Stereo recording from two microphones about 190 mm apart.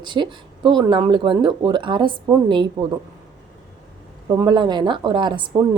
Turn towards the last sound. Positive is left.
turn(degrees=-25)  # may be behind; listen again after turning